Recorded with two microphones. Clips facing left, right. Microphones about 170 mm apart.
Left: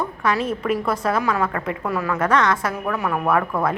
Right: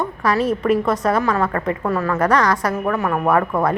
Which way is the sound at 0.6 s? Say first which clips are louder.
Right 4 dB; 5° left (ahead or behind).